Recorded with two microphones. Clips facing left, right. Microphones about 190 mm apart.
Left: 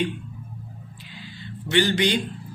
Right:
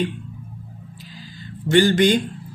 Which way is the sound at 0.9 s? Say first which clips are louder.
Right 2 dB; 40° right (ahead or behind).